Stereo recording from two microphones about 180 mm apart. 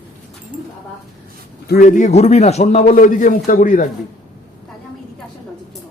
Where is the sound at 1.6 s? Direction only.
50° left (ahead or behind).